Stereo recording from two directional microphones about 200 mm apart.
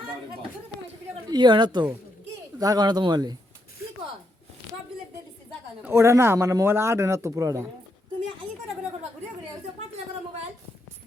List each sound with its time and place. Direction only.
1.3 s speech: 20° right (ahead or behind)
5.8 s speech: 15° right (ahead or behind)